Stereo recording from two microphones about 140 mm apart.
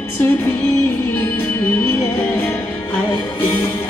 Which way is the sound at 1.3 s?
15° left (ahead or behind).